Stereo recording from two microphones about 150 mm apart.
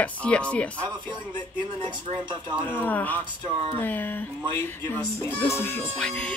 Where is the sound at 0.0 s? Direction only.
10° left (ahead or behind).